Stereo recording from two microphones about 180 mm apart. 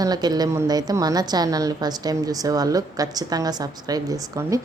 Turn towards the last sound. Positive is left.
turn(degrees=-20)  # may be behind; listen again after turning